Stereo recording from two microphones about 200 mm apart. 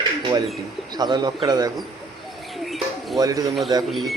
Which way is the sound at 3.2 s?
15° right (ahead or behind).